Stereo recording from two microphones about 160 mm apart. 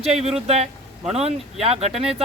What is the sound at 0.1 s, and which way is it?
Speech, 40° right (ahead or behind).